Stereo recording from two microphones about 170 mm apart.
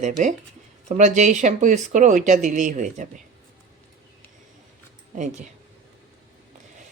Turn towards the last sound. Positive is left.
turn(degrees=-45)  # may be behind; listen again after turning